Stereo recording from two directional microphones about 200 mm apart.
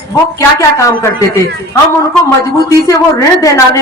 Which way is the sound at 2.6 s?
15° left (ahead or behind).